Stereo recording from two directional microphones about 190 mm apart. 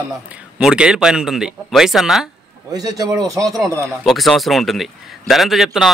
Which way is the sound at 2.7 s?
20° right (ahead or behind).